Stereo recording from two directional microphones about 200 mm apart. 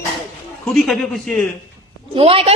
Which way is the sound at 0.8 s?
Centre (ahead or behind).